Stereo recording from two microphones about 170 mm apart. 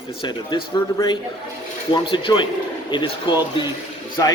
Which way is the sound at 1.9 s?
30° left (ahead or behind).